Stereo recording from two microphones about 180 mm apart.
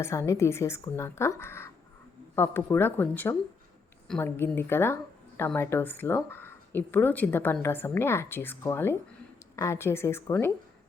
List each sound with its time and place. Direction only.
0.0 s speech: 15° left (ahead or behind)